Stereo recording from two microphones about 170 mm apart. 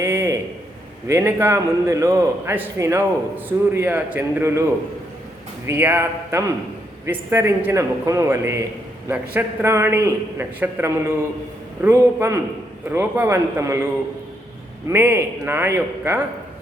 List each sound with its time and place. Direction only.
0.0 s a sound: 15° right (ahead or behind)
1.0 s a man's voice: 15° right (ahead or behind)
5.6 s a man's voice: 10° right (ahead or behind)
14.8 s a man's voice: 15° right (ahead or behind)